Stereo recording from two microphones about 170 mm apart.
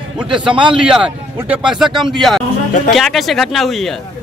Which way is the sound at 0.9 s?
5° right (ahead or behind).